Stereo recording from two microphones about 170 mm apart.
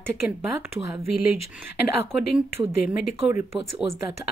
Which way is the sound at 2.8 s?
10° right (ahead or behind).